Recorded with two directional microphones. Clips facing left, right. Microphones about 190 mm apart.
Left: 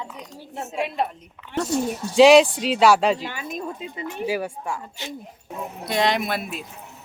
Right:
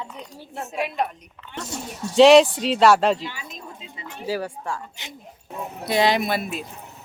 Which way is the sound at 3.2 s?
55° left (ahead or behind).